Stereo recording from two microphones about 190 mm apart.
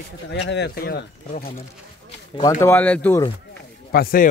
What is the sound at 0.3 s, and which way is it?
Speech, 65° left (ahead or behind).